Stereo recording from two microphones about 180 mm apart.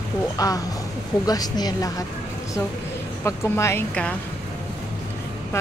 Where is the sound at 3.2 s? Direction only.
15° left (ahead or behind).